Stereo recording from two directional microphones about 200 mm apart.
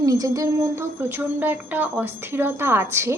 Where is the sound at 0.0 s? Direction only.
15° right (ahead or behind).